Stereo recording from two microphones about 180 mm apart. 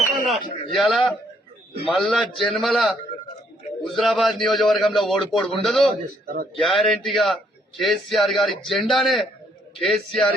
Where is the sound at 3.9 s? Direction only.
Centre (ahead or behind).